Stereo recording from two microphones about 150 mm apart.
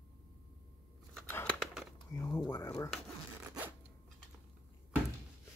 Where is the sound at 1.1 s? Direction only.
5° left (ahead or behind).